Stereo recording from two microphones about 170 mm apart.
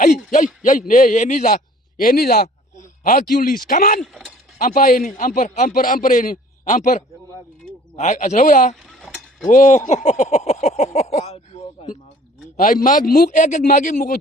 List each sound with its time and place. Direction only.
0.3 s a man's voice: 45° left (ahead or behind)
2.0 s speech: 60° left (ahead or behind)
4.0 s speech: centre (ahead or behind)
4.5 s a man's voice: 55° left (ahead or behind)
8.7 s a sound: centre (ahead or behind)
9.5 s speech: 50° left (ahead or behind)
12.5 s a man's voice: 50° left (ahead or behind)